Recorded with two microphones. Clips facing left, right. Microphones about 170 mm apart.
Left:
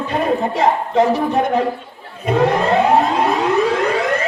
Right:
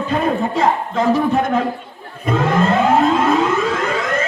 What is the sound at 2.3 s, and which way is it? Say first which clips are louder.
Siren: left 1 dB; 65° left (ahead or behind).